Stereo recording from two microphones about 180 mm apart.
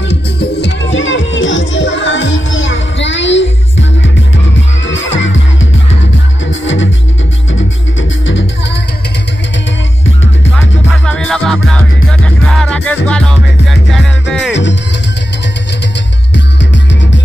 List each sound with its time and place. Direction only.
0.1 s music: 75° left (ahead or behind); by 3.4 s 90° left
4.8 s music: 90° left
8.0 s music: 90° left
10.5 s music: 5° left (ahead or behind)
14.5 s music: 85° left